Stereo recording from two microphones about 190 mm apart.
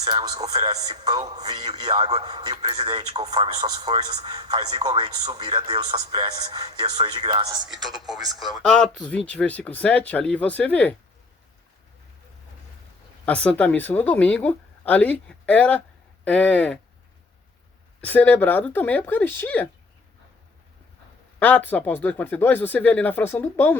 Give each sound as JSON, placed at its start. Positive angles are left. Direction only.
{"t": 0.2, "sound": "speech", "side_deg": -20}
{"t": 1.2, "sound": "a man's voice", "side_deg": -35}
{"t": 1.5, "sound": "speech", "side_deg": -20}
{"t": 1.9, "sound": "a man's voice", "side_deg": -35}
{"t": 7.7, "sound": "speech", "side_deg": 0}
{"t": 13.2, "sound": "speech", "side_deg": 5}
{"t": 18.0, "sound": "speech", "side_deg": 10}
{"t": 21.3, "sound": "speech", "side_deg": 10}